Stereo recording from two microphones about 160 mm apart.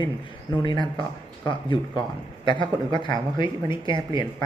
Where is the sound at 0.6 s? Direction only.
30° left (ahead or behind).